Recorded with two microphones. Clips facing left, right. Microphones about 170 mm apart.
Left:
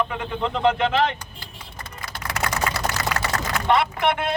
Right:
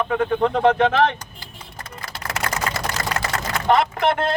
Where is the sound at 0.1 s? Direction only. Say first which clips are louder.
Right 7 dB; 50° right (ahead or behind).